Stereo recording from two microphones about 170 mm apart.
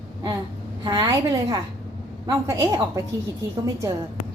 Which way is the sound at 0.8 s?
25° right (ahead or behind).